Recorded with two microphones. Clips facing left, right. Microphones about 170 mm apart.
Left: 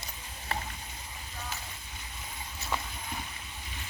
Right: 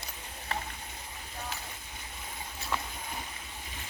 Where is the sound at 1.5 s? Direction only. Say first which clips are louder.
Even; centre (ahead or behind).